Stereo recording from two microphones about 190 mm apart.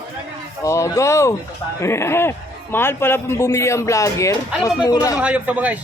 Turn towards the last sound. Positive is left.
turn(degrees=-10)  # may be behind; listen again after turning